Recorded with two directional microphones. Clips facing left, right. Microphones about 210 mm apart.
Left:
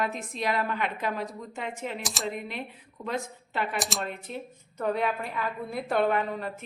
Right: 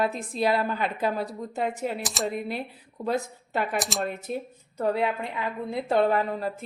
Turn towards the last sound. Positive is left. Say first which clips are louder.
# right 3 dB
turn(degrees=-35)  # may be behind; listen again after turning